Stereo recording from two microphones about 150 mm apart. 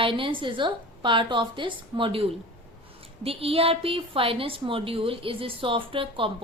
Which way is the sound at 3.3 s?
40° right (ahead or behind).